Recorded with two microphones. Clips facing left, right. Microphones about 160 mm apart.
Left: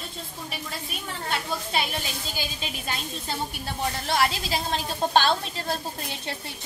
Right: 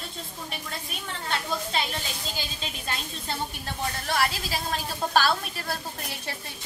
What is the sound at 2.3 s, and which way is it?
A woman's voice, 5° left (ahead or behind).